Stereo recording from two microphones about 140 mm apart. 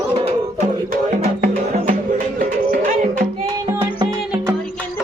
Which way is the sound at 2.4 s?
70° right (ahead or behind).